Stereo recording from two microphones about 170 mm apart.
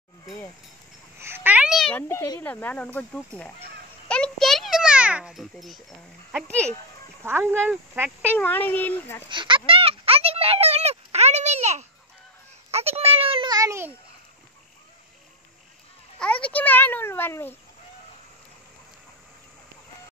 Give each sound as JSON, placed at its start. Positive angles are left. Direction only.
{"t": 1.1, "sound": "babbling", "side_deg": -15}
{"t": 2.0, "sound": "speech", "side_deg": 15}
{"t": 4.1, "sound": "a sound", "side_deg": 5}
{"t": 7.2, "sound": "speech", "side_deg": -15}
{"t": 8.3, "sound": "speech", "side_deg": 10}
{"t": 9.3, "sound": "a sound", "side_deg": -30}
{"t": 16.2, "sound": "a child's voice", "side_deg": 5}